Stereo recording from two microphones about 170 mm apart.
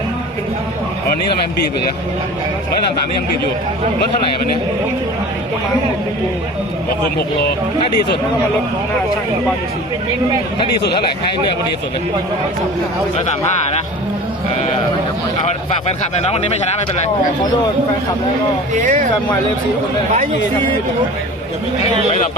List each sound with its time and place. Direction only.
16.2 s speech: 40° left (ahead or behind)
18.8 s speech: 50° right (ahead or behind)